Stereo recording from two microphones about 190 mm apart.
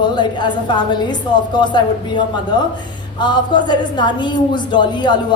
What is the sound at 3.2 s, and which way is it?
A woman's voice, 25° left (ahead or behind).